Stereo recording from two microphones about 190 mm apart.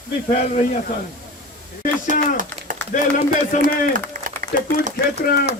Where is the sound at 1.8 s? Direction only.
45° left (ahead or behind).